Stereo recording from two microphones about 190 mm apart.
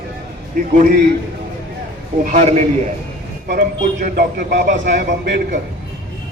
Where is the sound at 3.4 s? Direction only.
50° right (ahead or behind).